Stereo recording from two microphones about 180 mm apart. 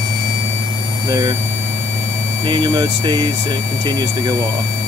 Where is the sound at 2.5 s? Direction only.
20° right (ahead or behind).